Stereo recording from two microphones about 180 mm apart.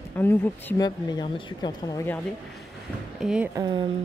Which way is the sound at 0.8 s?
25° left (ahead or behind).